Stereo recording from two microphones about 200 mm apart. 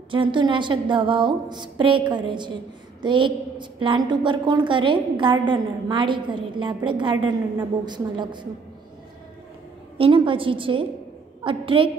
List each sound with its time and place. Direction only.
0.1 s a woman's voice: 25° right (ahead or behind)
9.9 s a woman's voice: 25° right (ahead or behind)